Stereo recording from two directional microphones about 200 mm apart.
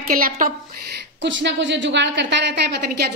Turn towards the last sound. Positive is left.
turn(degrees=-55)  # may be behind; listen again after turning